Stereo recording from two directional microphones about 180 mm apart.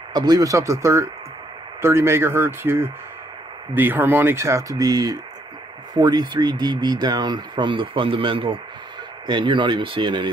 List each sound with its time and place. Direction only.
0.1 s speech: 20° right (ahead or behind)